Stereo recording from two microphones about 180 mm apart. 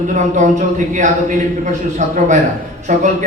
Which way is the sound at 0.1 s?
45° right (ahead or behind).